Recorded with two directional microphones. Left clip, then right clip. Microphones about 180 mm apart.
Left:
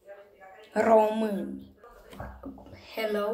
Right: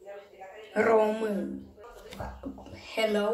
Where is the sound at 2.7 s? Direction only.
Centre (ahead or behind).